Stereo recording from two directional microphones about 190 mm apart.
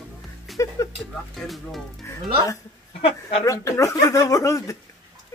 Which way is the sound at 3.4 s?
15° left (ahead or behind).